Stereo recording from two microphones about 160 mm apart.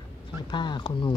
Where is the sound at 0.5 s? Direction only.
30° left (ahead or behind).